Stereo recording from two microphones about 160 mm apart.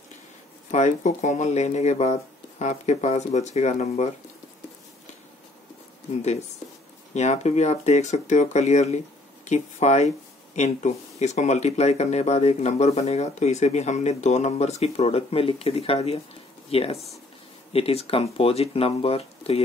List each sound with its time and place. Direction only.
0.7 s speech: 45° left (ahead or behind)
7.2 s speech: 45° left (ahead or behind)